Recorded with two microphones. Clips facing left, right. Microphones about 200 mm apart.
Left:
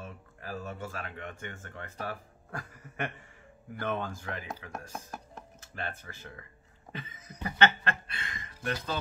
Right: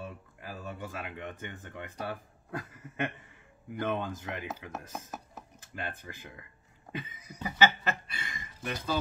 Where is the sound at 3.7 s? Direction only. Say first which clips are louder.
Right 1 dB; 15° right (ahead or behind).